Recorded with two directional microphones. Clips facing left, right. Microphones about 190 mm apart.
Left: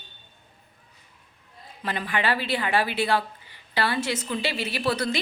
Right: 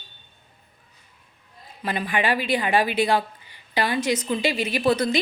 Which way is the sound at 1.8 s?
15° right (ahead or behind).